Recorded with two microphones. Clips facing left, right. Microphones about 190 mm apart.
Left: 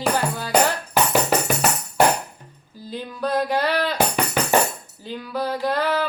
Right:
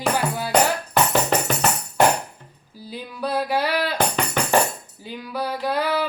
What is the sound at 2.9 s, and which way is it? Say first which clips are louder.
Speech: left 2 dB; 10° right (ahead or behind).